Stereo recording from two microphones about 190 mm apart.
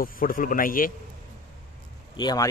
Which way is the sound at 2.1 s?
20° left (ahead or behind).